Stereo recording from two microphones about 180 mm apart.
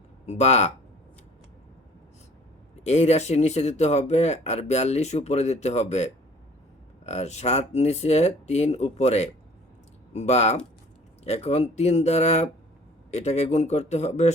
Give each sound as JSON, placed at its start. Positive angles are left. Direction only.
{"t": 0.3, "sound": "speech", "side_deg": 40}
{"t": 2.8, "sound": "speech", "side_deg": 35}